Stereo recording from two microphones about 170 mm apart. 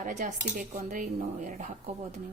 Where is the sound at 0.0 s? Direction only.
45° right (ahead or behind).